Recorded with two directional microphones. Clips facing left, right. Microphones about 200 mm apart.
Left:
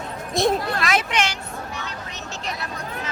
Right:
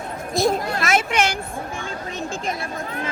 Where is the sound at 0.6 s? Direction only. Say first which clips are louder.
Right 2 dB; 50° right (ahead or behind).